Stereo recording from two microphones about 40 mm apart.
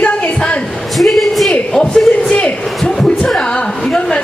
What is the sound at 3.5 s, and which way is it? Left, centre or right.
Speech, left.